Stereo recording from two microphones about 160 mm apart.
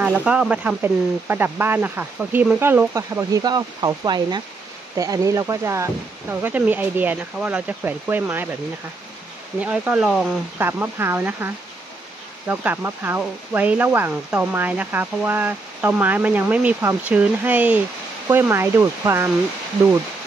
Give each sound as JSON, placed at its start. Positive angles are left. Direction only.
{"t": 0.0, "sound": "speech", "side_deg": -10}
{"t": 9.6, "sound": "speech", "side_deg": -10}
{"t": 10.6, "sound": "speech", "side_deg": -15}